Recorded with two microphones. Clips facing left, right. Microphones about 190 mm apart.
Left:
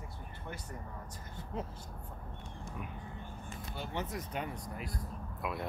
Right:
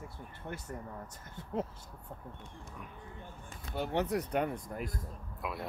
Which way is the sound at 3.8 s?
65° right (ahead or behind).